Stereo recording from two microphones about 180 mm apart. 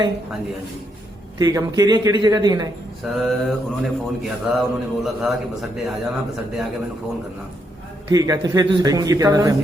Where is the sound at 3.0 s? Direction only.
Centre (ahead or behind).